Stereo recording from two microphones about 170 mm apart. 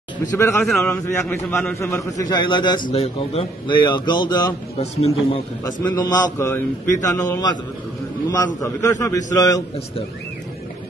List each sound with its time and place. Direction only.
0.3 s a man's voice: 15° left (ahead or behind)
0.7 s a man's voice: 5° left (ahead or behind); by 4.6 s 25° left (ahead or behind)
4.7 s a man's voice: 40° left (ahead or behind)
5.7 s a man's voice: 25° left (ahead or behind)